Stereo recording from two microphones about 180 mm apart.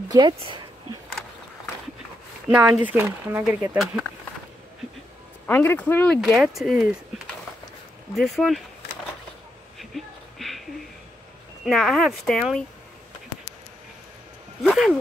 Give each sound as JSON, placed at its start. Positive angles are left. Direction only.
{"t": 0.1, "sound": "speech", "side_deg": -25}
{"t": 2.5, "sound": "speech", "side_deg": -10}
{"t": 5.5, "sound": "speech", "side_deg": 10}
{"t": 8.2, "sound": "speech", "side_deg": 0}
{"t": 9.8, "sound": "a sound", "side_deg": 0}
{"t": 11.6, "sound": "speech", "side_deg": 0}
{"t": 14.6, "sound": "speech", "side_deg": 0}